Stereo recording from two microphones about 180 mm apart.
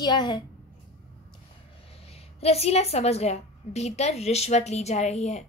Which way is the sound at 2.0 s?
35° left (ahead or behind).